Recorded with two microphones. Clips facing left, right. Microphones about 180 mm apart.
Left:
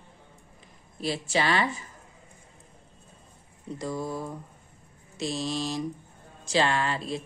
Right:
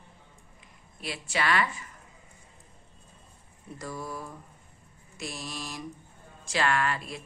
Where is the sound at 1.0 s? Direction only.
30° left (ahead or behind).